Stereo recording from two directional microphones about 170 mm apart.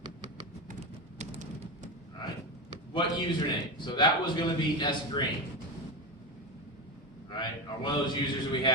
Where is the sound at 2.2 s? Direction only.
25° left (ahead or behind).